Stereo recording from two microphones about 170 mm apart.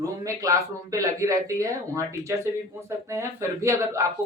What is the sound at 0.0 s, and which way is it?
Speech, 20° right (ahead or behind).